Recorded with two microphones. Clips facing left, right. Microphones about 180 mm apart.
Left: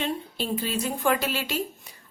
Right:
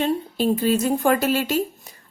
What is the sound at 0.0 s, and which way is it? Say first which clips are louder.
Speech: right 8 dB; 45° right (ahead or behind).